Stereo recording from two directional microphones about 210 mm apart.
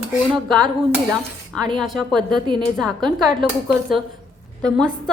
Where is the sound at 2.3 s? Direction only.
20° right (ahead or behind).